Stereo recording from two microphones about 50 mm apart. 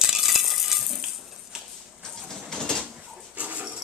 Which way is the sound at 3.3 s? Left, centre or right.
Right.